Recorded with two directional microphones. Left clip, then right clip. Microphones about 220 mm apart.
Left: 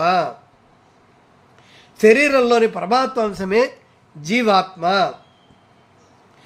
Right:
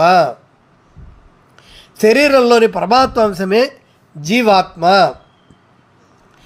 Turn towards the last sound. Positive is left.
turn(degrees=-20)  # may be behind; listen again after turning